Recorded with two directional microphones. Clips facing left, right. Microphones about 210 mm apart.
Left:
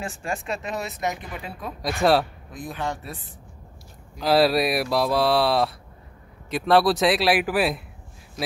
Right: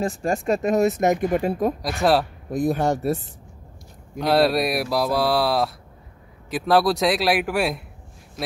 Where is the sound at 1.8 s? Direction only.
Centre (ahead or behind).